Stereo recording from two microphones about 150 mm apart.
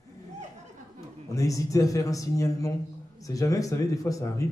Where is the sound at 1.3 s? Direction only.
20° left (ahead or behind).